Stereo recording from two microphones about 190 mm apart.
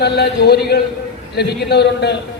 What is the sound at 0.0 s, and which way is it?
A man's voice, 60° left (ahead or behind).